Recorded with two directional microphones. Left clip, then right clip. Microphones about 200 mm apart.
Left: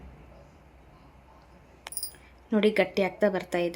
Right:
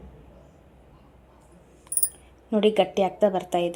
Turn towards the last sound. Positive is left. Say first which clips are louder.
# right 4 dB
turn(degrees=0)  # may be behind; listen again after turning